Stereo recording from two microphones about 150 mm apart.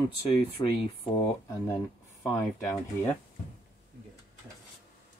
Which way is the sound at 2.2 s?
15° left (ahead or behind).